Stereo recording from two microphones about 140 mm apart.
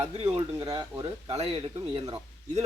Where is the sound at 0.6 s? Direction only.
30° right (ahead or behind).